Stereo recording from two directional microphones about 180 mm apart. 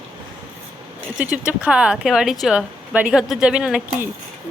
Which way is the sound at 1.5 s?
5° right (ahead or behind).